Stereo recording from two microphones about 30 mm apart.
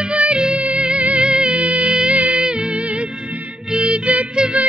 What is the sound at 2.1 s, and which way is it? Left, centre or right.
Music, right.